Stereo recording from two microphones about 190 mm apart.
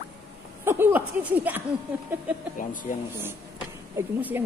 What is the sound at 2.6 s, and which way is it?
Speech, 45° left (ahead or behind).